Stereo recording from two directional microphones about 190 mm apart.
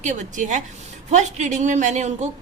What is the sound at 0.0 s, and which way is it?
A woman's voice, 40° right (ahead or behind).